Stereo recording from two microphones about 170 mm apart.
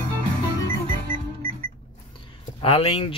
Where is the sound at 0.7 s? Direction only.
55° right (ahead or behind).